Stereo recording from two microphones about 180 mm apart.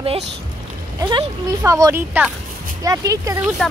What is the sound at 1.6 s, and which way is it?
Speech, 20° right (ahead or behind).